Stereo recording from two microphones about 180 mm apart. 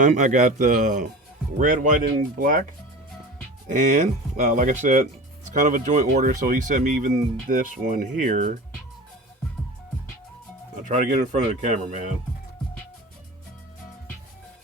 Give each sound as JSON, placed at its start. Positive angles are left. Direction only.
{"t": 0.0, "sound": "speech", "side_deg": -45}
{"t": 3.7, "sound": "speech", "side_deg": -40}
{"t": 10.8, "sound": "speech", "side_deg": -40}